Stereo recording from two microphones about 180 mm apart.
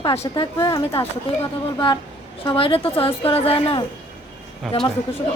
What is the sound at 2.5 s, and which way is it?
A woman's voice, 30° left (ahead or behind).